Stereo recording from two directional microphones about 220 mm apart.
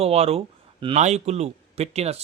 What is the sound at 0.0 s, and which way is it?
A man's voice, 30° right (ahead or behind).